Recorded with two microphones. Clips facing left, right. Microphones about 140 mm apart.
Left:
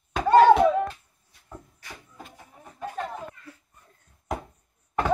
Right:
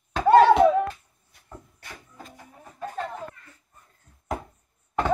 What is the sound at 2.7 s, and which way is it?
Music, 10° left (ahead or behind).